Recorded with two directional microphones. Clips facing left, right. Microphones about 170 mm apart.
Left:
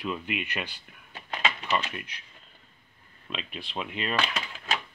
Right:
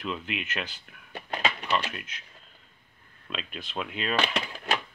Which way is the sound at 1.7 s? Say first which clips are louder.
Even; centre (ahead or behind).